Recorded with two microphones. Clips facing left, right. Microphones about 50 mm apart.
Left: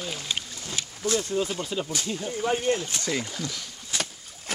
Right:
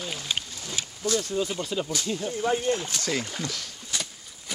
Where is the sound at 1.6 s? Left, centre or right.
Centre.